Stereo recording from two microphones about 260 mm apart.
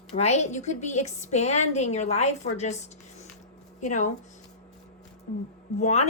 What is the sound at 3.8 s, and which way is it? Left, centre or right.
Speech, left.